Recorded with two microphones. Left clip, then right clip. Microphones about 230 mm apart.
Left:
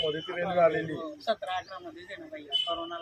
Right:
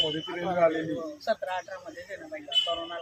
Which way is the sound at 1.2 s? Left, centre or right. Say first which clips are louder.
Right 1 dB; centre.